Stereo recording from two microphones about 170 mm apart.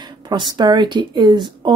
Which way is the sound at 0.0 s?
25° right (ahead or behind).